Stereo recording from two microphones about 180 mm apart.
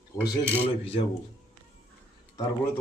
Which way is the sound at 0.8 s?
30° left (ahead or behind).